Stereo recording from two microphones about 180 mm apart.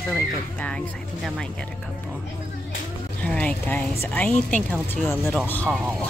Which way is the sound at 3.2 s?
10° left (ahead or behind).